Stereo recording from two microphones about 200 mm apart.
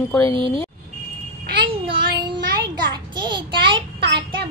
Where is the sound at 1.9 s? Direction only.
25° right (ahead or behind).